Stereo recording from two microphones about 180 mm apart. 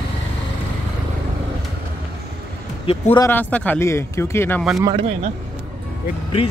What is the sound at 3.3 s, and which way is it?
Speech, 10° left (ahead or behind).